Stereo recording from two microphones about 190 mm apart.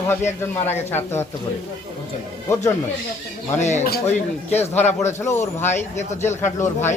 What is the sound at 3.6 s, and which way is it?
Speech, 35° left (ahead or behind).